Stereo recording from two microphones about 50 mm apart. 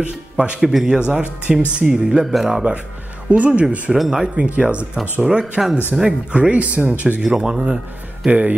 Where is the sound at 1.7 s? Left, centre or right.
Centre.